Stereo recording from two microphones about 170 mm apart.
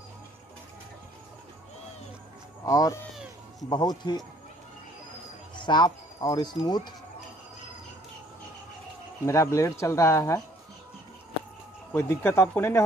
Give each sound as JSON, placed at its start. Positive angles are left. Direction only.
{"t": 2.6, "sound": "speech", "side_deg": 20}
{"t": 5.6, "sound": "speech", "side_deg": 25}
{"t": 9.2, "sound": "speech", "side_deg": 15}
{"t": 11.9, "sound": "speech", "side_deg": 15}